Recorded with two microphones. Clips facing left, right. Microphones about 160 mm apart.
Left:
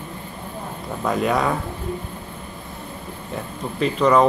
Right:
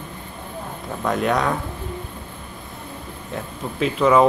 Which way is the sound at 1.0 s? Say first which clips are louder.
Even; centre (ahead or behind).